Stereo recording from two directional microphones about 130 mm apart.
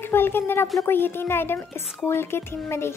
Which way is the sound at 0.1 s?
15° left (ahead or behind).